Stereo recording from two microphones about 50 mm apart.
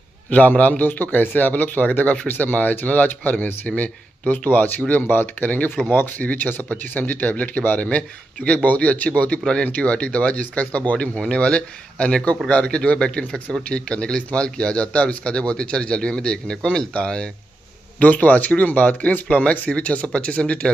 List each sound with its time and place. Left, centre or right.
0.3 s a man's voice: left
13.3 s speech: centre
13.7 s a man's voice: left
17.9 s a man's voice: left